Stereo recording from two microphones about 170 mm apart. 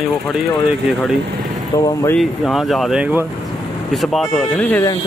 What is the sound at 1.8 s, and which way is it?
Speech, 20° left (ahead or behind).